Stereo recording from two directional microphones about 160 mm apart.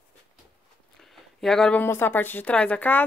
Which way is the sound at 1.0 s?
5° left (ahead or behind).